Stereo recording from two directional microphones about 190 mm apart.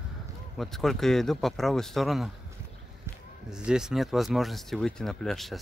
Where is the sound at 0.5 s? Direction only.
Centre (ahead or behind).